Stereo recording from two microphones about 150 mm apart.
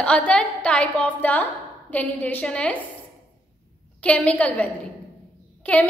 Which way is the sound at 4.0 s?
10° left (ahead or behind).